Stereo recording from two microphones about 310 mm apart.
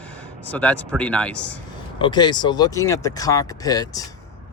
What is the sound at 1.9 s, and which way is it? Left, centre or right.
Speech, centre.